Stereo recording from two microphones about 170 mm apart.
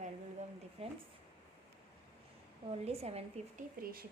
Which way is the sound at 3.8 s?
60° right (ahead or behind).